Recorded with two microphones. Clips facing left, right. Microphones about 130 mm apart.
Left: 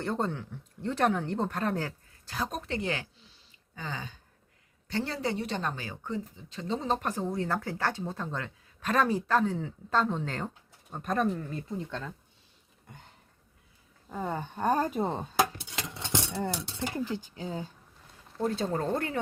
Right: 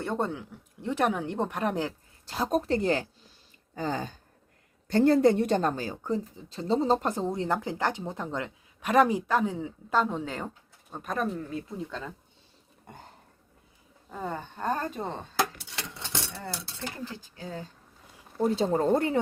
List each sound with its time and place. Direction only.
0.0 s speech: 5° right (ahead or behind)
2.2 s a woman's voice: 25° right (ahead or behind)
2.5 s speech: 40° right (ahead or behind); by 12.1 s 5° right (ahead or behind)
14.1 s speech: 5° left (ahead or behind)
16.0 s speech: 20° left (ahead or behind)
18.4 s speech: 20° right (ahead or behind)